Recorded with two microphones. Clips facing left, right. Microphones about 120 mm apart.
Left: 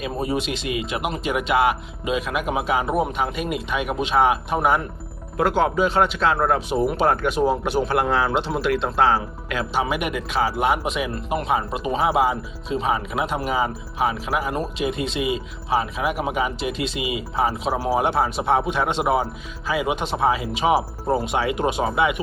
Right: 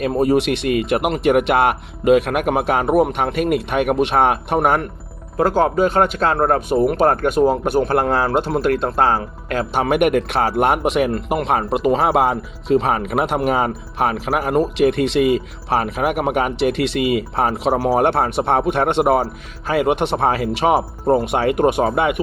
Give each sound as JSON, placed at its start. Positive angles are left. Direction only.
{"t": 0.0, "sound": "speech", "side_deg": -60}
{"t": 5.4, "sound": "speech", "side_deg": -40}